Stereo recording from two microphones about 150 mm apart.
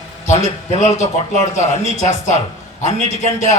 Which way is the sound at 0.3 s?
50° left (ahead or behind).